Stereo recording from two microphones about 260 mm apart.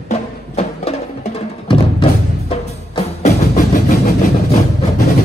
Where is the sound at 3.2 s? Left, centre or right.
Left.